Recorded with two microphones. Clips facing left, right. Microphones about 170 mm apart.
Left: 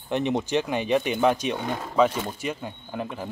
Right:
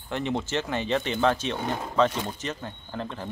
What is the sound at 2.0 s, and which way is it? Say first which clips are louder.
Speech: left 3 dB; 5° left (ahead or behind).